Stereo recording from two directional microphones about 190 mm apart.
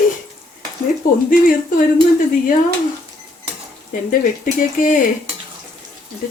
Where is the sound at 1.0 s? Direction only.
45° left (ahead or behind).